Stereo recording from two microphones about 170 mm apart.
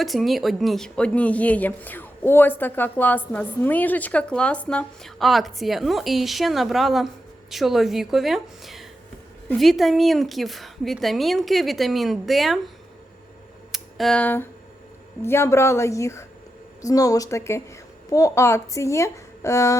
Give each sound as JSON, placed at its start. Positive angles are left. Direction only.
{"t": 0.0, "sound": "a woman's voice", "side_deg": 0}
{"t": 13.7, "sound": "a woman's voice", "side_deg": 5}